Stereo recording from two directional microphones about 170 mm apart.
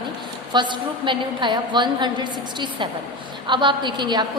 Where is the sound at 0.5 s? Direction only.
25° right (ahead or behind).